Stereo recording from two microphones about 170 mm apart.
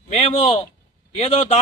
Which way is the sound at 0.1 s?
40° left (ahead or behind).